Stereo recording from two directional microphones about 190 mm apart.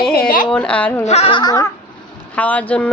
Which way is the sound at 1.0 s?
35° left (ahead or behind).